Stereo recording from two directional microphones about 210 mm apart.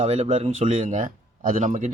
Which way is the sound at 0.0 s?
30° right (ahead or behind).